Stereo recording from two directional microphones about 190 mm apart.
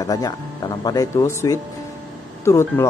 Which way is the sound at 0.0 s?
20° left (ahead or behind).